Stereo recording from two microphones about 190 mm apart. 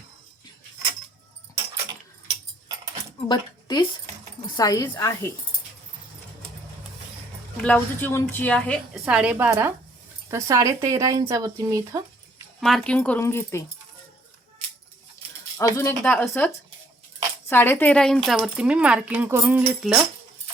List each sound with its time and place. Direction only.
3.2 s a woman's voice: 25° left (ahead or behind)
7.5 s a woman's voice: 5° left (ahead or behind)
9.0 s speech: 5° right (ahead or behind)
12.5 s a woman's voice: centre (ahead or behind)
15.5 s a woman's voice: 15° left (ahead or behind)
17.5 s speech: 10° left (ahead or behind); by 20.1 s 5° right (ahead or behind)